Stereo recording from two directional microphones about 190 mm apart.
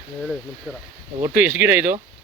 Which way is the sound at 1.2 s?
10° right (ahead or behind).